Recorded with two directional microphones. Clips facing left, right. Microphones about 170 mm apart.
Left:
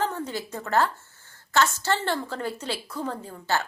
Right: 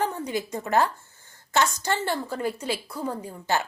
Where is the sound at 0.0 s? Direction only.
15° right (ahead or behind).